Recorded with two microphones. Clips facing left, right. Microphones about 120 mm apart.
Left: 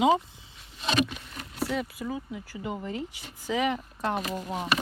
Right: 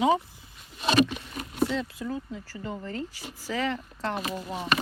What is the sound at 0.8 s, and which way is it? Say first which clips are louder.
Speech: right 4 dB; 5° right (ahead or behind).